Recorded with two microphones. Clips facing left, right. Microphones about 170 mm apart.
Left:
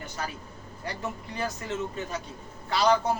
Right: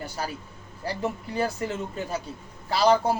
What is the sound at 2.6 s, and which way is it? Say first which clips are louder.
Speech: right 3 dB; 30° right (ahead or behind).